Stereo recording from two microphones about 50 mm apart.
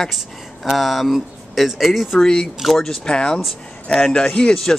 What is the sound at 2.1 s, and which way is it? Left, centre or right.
Speech, centre.